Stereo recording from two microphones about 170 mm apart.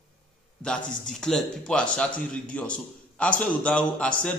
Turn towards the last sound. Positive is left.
turn(degrees=5)  # may be behind; listen again after turning